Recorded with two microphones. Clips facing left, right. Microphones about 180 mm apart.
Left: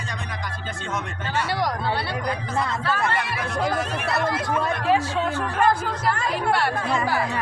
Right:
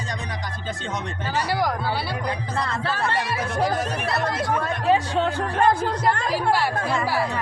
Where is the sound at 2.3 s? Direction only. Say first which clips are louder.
Left 3 dB; 30° right (ahead or behind).